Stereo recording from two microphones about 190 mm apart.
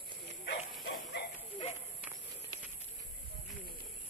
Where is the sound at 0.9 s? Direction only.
65° left (ahead or behind).